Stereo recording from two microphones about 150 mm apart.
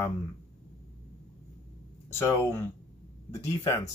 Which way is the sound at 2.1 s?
15° left (ahead or behind).